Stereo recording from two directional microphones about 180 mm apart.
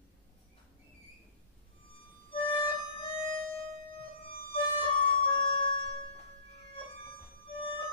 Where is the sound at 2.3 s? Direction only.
30° left (ahead or behind).